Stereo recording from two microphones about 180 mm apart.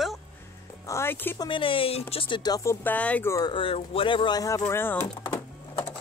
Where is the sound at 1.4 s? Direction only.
30° left (ahead or behind).